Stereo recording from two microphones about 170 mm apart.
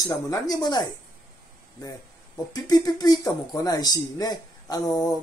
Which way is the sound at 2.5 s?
20° left (ahead or behind).